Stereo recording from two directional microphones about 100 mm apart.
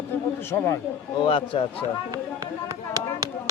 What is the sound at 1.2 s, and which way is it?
Speech, 60° left (ahead or behind).